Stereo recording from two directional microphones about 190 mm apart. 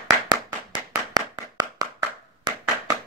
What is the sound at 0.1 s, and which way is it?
Clapping, 20° right (ahead or behind).